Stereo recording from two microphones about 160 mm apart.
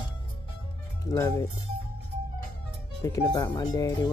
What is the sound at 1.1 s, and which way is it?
Speech, 20° left (ahead or behind).